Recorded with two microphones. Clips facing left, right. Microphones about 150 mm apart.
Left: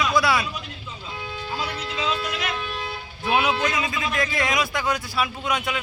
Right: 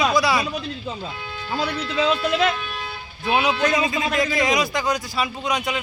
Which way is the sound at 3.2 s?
Centre (ahead or behind).